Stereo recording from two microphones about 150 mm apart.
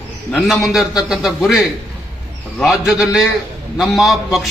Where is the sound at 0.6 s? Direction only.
Centre (ahead or behind).